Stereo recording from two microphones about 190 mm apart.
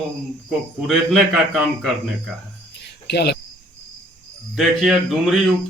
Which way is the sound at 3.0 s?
60° left (ahead or behind).